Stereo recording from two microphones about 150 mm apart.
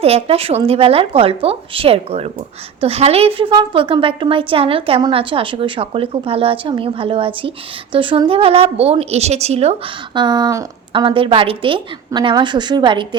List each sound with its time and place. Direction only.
0.0 s a woman's voice: 40° right (ahead or behind)
10.2 s speech: 30° right (ahead or behind)
10.9 s a woman's voice: 35° right (ahead or behind)